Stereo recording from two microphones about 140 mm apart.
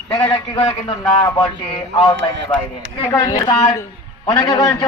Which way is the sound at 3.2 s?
25° left (ahead or behind).